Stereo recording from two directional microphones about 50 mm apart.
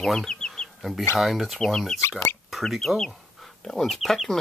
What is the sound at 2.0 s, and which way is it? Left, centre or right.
Speech, left.